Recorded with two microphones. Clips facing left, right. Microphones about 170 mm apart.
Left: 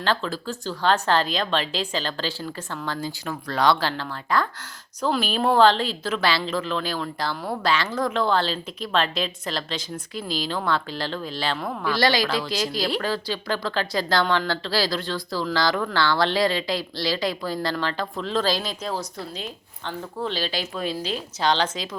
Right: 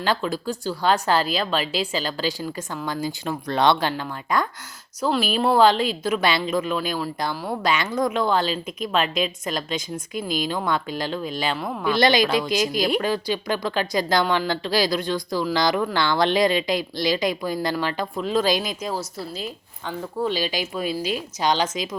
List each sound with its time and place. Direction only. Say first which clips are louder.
0.0 s speech: right 2 dB; 10° right (ahead or behind)
3.2 s speech: right 2 dB; 25° right (ahead or behind)
5.0 s speech: right 1 dB; 5° right (ahead or behind)